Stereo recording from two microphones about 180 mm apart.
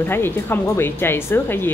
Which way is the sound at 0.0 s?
10° left (ahead or behind).